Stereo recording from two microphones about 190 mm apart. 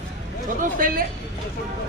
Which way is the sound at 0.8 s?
50° right (ahead or behind).